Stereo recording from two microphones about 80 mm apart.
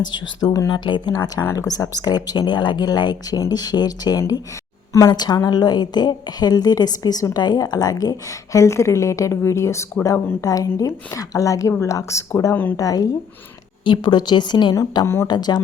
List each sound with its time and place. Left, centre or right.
0.7 s speech: left
1.1 s a woman's voice: left
13.8 s speech: left
15.0 s speech: left
15.3 s a woman's voice: left